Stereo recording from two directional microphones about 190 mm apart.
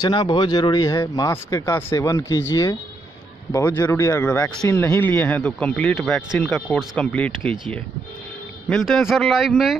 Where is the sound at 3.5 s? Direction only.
15° left (ahead or behind).